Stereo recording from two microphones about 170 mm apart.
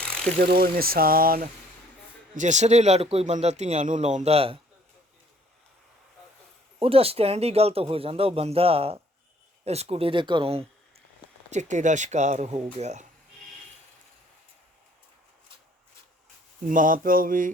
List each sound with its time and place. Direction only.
0.0 s a sound: 5° left (ahead or behind)
0.3 s speech: 60° right (ahead or behind)
2.3 s speech: 45° right (ahead or behind)
6.7 s speech: 35° right (ahead or behind)
11.5 s speech: 45° right (ahead or behind)
16.6 s speech: 50° right (ahead or behind)